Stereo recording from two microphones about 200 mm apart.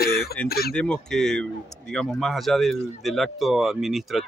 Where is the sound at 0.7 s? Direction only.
5° left (ahead or behind).